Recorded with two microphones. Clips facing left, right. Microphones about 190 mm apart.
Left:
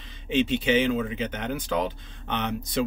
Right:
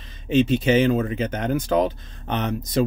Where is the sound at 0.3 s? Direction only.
40° right (ahead or behind).